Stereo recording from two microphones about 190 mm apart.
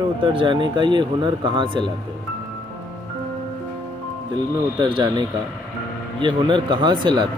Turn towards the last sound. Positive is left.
turn(degrees=-25)  # may be behind; listen again after turning